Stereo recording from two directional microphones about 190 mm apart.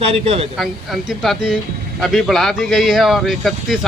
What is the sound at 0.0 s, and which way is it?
Speech, 30° right (ahead or behind).